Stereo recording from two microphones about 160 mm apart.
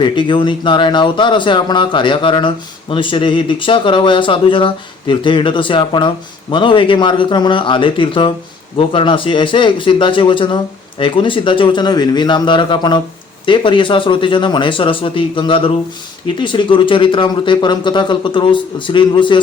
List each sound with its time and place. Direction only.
0.0 s speech: 30° left (ahead or behind)